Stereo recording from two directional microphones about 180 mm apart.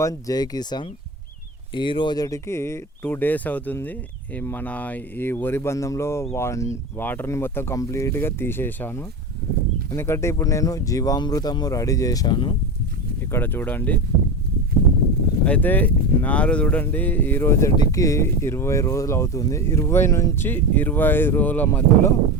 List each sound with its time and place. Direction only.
0.0 s speech: 20° left (ahead or behind)
13.3 s speech: 10° left (ahead or behind)
15.4 s speech: 10° left (ahead or behind)